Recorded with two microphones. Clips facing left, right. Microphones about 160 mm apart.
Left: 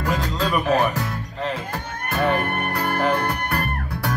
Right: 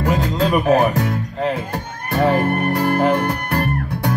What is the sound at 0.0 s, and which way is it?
Music, 35° right (ahead or behind).